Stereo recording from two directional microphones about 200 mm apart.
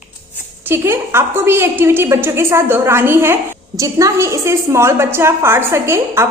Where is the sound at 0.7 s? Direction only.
10° right (ahead or behind).